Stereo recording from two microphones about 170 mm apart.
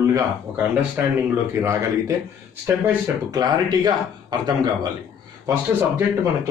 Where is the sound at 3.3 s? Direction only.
25° right (ahead or behind).